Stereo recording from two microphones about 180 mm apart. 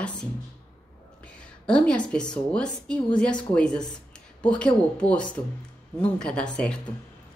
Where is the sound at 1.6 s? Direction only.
5° left (ahead or behind).